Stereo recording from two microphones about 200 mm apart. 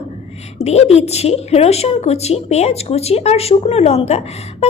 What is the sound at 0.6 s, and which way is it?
A woman's voice, 30° left (ahead or behind).